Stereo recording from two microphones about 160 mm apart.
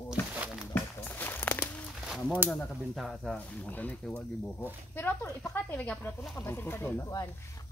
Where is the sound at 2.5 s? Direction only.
5° left (ahead or behind).